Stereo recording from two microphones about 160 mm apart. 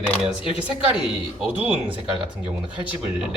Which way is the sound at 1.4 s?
5° right (ahead or behind).